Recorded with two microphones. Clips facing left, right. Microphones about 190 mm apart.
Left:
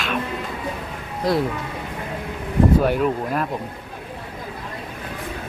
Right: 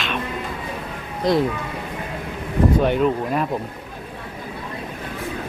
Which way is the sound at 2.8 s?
5° left (ahead or behind).